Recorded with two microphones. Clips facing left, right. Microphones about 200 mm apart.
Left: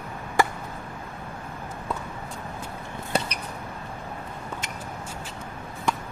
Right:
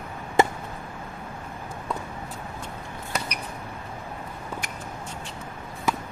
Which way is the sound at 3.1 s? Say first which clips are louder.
Left 5 dB; 30° left (ahead or behind).